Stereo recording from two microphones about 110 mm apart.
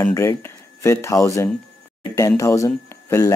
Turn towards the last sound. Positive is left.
turn(degrees=30)  # may be behind; listen again after turning